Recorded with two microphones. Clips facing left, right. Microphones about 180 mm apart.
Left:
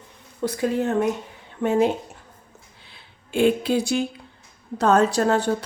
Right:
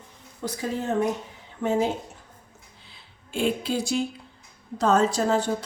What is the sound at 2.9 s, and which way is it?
A woman's voice, 60° left (ahead or behind).